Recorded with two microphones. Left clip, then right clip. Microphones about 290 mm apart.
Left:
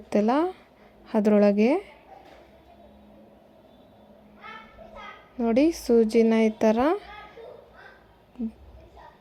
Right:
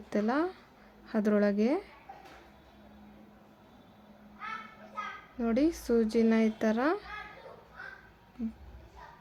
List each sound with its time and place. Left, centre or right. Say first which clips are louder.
0.1 s speech: left 7 dB; centre
5.4 s speech: left 7 dB; centre